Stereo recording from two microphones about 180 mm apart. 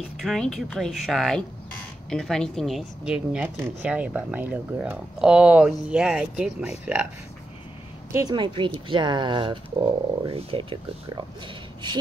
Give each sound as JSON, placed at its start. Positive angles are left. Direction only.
{"t": 0.2, "sound": "speech", "side_deg": 0}
{"t": 8.1, "sound": "speech", "side_deg": -20}